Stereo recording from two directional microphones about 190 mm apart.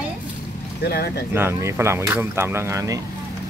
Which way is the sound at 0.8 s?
55° left (ahead or behind).